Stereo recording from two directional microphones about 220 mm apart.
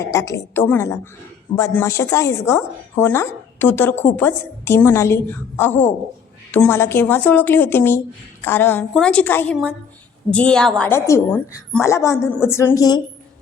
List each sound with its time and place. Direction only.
0.0 s a woman's voice: 15° left (ahead or behind)